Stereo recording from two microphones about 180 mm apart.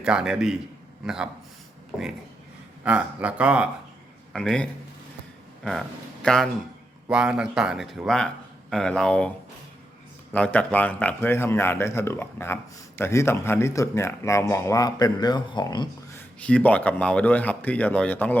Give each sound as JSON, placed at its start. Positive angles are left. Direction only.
{"t": 0.0, "sound": "speech", "side_deg": -5}
{"t": 2.8, "sound": "a man's voice", "side_deg": -10}
{"t": 6.2, "sound": "speech", "side_deg": 5}
{"t": 10.3, "sound": "speech", "side_deg": 5}
{"t": 16.1, "sound": "speech", "side_deg": 5}